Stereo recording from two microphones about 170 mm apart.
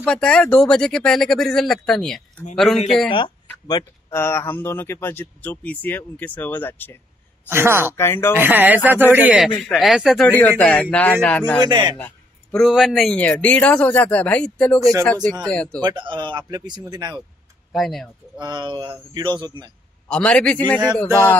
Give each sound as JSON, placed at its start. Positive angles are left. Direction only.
{"t": 0.0, "sound": "speech", "side_deg": 5}
{"t": 3.1, "sound": "speech", "side_deg": 30}
{"t": 7.4, "sound": "speech", "side_deg": -15}
{"t": 8.0, "sound": "speech", "side_deg": 15}
{"t": 8.4, "sound": "speech", "side_deg": -10}
{"t": 11.6, "sound": "speech", "side_deg": -25}
{"t": 12.0, "sound": "speech", "side_deg": 5}
{"t": 16.0, "sound": "speech", "side_deg": -30}
{"t": 17.7, "sound": "speech", "side_deg": 0}
{"t": 18.4, "sound": "speech", "side_deg": -25}
{"t": 20.1, "sound": "speech", "side_deg": 5}